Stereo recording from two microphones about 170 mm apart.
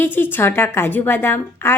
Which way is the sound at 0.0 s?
10° left (ahead or behind).